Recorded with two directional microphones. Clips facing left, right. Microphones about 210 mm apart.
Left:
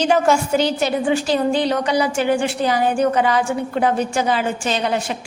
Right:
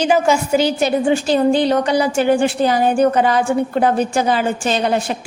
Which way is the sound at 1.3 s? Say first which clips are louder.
Right 4 dB; 45° right (ahead or behind).